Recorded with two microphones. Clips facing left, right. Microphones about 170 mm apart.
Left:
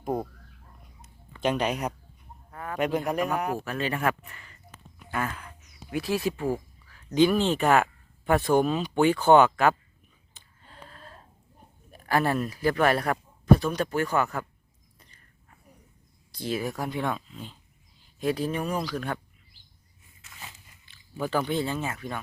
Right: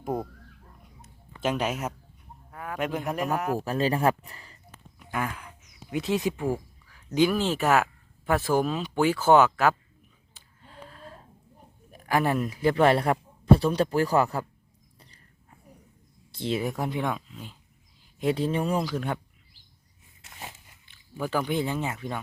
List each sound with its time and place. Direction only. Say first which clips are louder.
1.4 s speech: left 1 dB; 5° right (ahead or behind)
2.5 s a sound: left 3 dB; 5° right (ahead or behind)
3.1 s speech: even; centre (ahead or behind)
3.6 s speech: right 4 dB; 35° right (ahead or behind)
5.1 s speech: even; 15° right (ahead or behind)
10.6 s gasp: right 3 dB; 5° right (ahead or behind)
11.9 s speech: even; 15° right (ahead or behind); by 14.4 s 30° right (ahead or behind)
14.9 s dog: right 3 dB; 35° right (ahead or behind)
16.3 s speech: right 2 dB; 25° right (ahead or behind); by 17.6 s 10° right (ahead or behind)
18.2 s speech: right 2 dB; 25° right (ahead or behind)
20.3 s biting: right 4 dB; 50° right (ahead or behind)
21.2 s speech: even; 10° right (ahead or behind)